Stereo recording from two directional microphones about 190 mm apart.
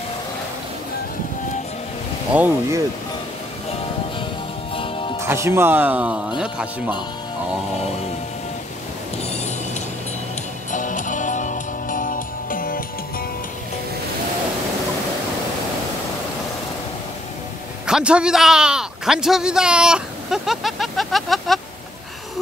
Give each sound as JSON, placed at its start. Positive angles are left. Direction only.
{"t": 2.3, "sound": "speech", "side_deg": -10}
{"t": 4.7, "sound": "music", "side_deg": 30}
{"t": 5.2, "sound": "speech", "side_deg": -15}
{"t": 10.7, "sound": "music", "side_deg": 40}
{"t": 17.8, "sound": "a man's voice", "side_deg": -5}